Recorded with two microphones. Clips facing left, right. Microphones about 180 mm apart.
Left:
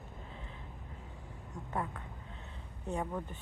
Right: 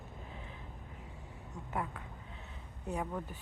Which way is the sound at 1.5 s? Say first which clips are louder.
Left 1 dB; 5° right (ahead or behind).